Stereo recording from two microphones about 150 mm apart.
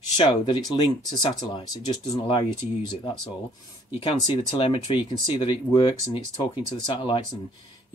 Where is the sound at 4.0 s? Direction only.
35° left (ahead or behind).